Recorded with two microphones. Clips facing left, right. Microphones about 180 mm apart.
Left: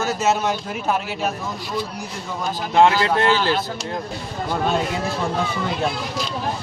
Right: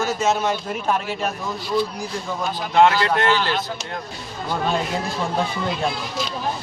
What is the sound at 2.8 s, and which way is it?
Speech, 25° left (ahead or behind).